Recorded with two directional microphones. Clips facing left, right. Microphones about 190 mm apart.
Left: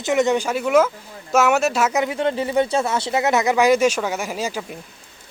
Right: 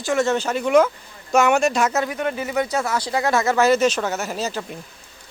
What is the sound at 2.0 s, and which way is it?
Speech, 25° left (ahead or behind).